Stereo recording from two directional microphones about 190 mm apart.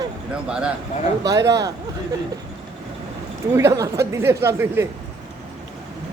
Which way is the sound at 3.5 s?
15° right (ahead or behind).